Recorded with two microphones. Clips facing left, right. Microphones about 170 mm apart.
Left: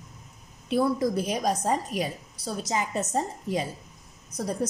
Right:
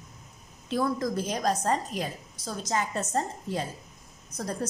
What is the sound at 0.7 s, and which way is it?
A woman's voice, 10° left (ahead or behind).